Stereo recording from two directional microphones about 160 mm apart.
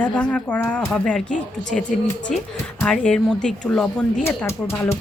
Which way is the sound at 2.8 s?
5° left (ahead or behind).